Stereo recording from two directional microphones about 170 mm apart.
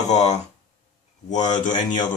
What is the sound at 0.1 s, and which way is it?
Speech, 40° left (ahead or behind).